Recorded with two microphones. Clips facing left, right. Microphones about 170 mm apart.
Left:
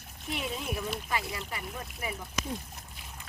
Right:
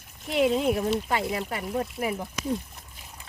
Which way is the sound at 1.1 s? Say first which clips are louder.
Right 7 dB; 65° right (ahead or behind).